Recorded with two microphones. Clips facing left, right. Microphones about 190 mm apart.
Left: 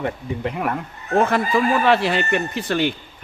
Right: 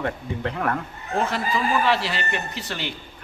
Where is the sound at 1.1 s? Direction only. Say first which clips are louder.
Left 6 dB; 55° left (ahead or behind).